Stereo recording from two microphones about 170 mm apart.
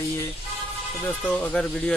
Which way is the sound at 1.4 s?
5° left (ahead or behind).